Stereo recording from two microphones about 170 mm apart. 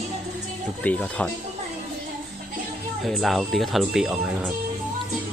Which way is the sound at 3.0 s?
Centre (ahead or behind).